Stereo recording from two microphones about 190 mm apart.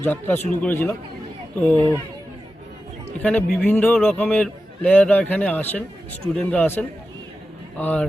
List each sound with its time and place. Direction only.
0.0 s a man's voice: 10° left (ahead or behind)
3.2 s a man's voice: 5° left (ahead or behind)